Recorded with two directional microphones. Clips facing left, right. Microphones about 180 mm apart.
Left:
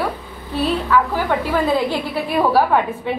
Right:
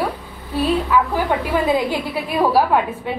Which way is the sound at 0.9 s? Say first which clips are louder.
Left 2 dB; 15° right (ahead or behind).